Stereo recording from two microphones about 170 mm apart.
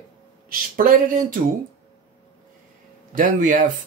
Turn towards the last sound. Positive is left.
turn(degrees=-50)  # may be behind; listen again after turning